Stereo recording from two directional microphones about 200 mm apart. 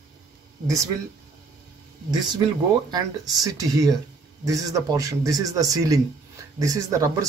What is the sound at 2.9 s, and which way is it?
A man's voice, 20° right (ahead or behind).